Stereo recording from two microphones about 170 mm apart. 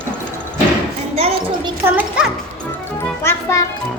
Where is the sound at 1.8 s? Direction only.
10° right (ahead or behind).